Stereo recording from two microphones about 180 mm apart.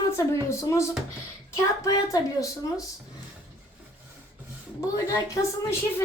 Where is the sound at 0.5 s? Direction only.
15° left (ahead or behind).